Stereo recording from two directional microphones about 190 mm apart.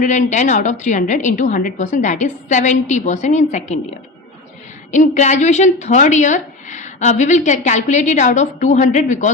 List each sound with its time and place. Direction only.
0.0 s a woman's voice: 40° left (ahead or behind)
4.9 s a woman's voice: 40° left (ahead or behind)